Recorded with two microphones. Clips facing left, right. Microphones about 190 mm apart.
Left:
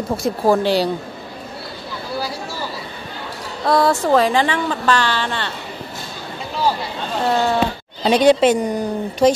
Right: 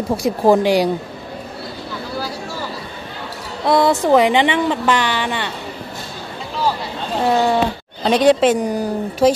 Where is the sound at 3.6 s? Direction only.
15° right (ahead or behind).